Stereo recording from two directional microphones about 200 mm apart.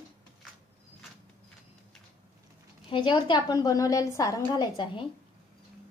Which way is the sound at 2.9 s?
25° left (ahead or behind).